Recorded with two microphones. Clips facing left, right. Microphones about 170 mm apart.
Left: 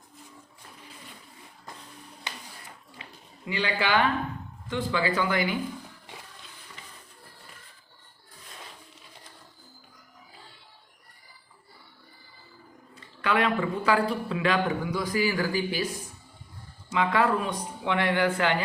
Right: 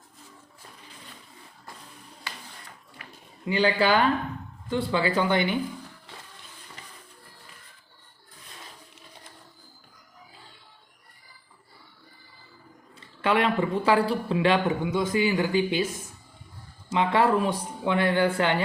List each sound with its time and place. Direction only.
3.0 s a sound: 25° left (ahead or behind)
3.4 s a man's voice: 35° right (ahead or behind)
6.1 s toilet flush: 15° left (ahead or behind)
13.2 s a man's voice: 25° right (ahead or behind)